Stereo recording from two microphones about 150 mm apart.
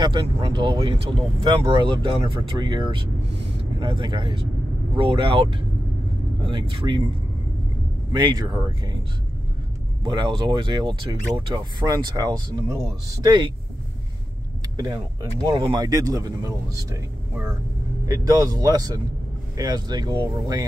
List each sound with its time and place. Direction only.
0.0 s speech: 30° right (ahead or behind)
8.1 s speech: 30° right (ahead or behind)
10.0 s speech: 30° right (ahead or behind)
15.4 s speech: 25° right (ahead or behind)
18.0 s speech: 20° right (ahead or behind)